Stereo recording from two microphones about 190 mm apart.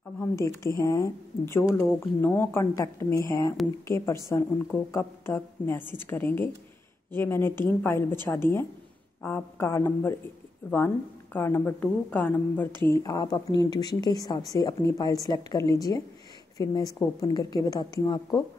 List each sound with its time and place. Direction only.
0.2 s speech: 15° left (ahead or behind)
11.3 s speech: 10° left (ahead or behind)
12.9 s a woman's voice: 20° left (ahead or behind)